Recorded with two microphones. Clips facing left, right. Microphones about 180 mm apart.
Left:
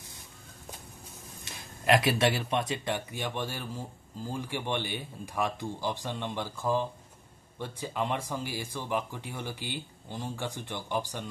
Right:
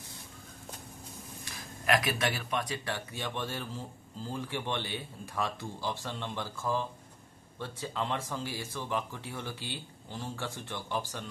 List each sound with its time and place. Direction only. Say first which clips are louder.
1.4 s speech: left 4 dB; 25° left (ahead or behind)